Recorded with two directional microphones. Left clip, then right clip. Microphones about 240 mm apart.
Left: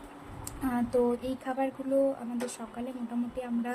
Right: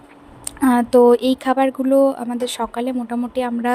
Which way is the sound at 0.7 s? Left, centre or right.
Right.